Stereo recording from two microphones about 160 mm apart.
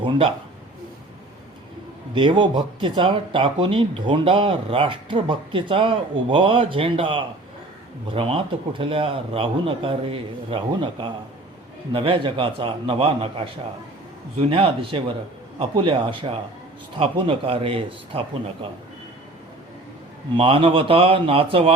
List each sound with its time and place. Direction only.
0.0 s speech: 35° right (ahead or behind)
2.1 s speech: 30° right (ahead or behind)
14.5 s speech: 35° right (ahead or behind)
20.3 s speech: 35° right (ahead or behind)